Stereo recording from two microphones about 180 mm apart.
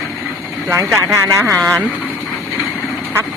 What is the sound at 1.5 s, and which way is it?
Speech, 5° left (ahead or behind).